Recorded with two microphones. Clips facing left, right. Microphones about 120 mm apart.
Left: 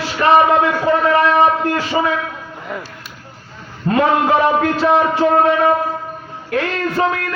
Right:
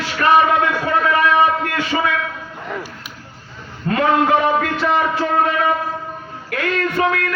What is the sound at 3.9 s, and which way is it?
A man's voice, 25° left (ahead or behind).